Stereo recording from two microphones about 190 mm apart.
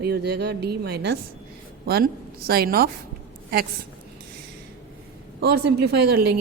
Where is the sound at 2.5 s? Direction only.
50° right (ahead or behind).